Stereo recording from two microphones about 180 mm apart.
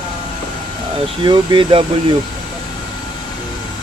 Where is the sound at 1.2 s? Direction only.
25° right (ahead or behind).